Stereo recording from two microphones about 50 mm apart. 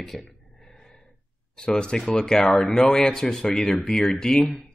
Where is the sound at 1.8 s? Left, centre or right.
Centre.